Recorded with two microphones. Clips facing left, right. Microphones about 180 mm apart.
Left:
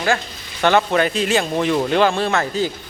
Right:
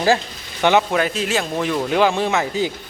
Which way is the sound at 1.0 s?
5° right (ahead or behind).